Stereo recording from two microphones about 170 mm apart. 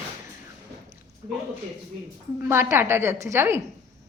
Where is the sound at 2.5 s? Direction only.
15° right (ahead or behind).